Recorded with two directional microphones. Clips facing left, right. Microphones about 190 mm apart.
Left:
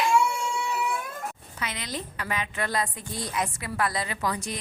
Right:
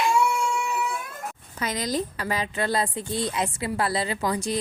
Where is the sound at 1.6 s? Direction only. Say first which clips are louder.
Right 8 dB; 40° right (ahead or behind).